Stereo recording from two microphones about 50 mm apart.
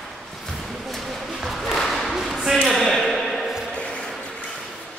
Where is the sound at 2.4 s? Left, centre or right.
Centre.